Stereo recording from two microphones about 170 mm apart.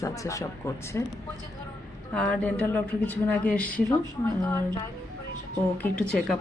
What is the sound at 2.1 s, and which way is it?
Speech, 5° left (ahead or behind).